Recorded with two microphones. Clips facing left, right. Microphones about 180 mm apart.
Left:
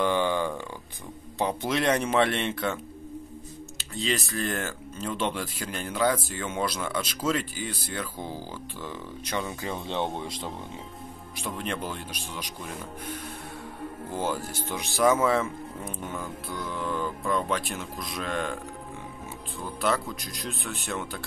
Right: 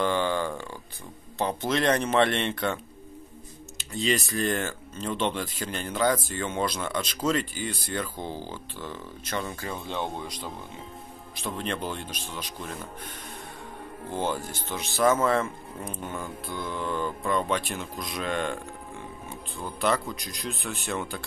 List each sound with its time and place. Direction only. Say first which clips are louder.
0.0 s a sound: left 1 dB; 15° left (ahead or behind)
1.4 s speech: even; 10° left (ahead or behind)
4.0 s speech: right 3 dB; centre (ahead or behind)
9.6 s speech: left 2 dB; 25° left (ahead or behind)
11.3 s speech: right 1 dB; 10° left (ahead or behind)
14.1 s speech: right 1 dB; 5° left (ahead or behind)
19.8 s speech: right 1 dB; centre (ahead or behind)